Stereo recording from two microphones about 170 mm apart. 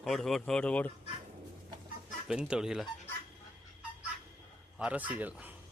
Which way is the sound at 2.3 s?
5° right (ahead or behind).